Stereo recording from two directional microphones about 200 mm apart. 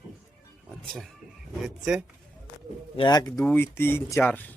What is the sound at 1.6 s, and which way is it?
Speech, 5° right (ahead or behind).